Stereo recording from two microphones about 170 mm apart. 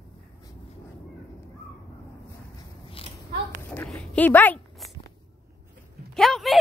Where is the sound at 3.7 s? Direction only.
10° left (ahead or behind).